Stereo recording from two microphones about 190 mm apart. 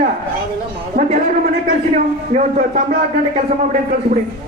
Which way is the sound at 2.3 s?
45° right (ahead or behind).